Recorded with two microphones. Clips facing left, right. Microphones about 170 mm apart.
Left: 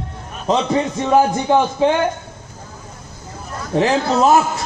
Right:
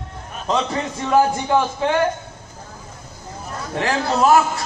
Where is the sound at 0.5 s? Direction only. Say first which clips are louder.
Left 5 dB; 20° left (ahead or behind).